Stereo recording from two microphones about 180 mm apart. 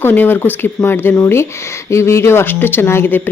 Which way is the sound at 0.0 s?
10° left (ahead or behind).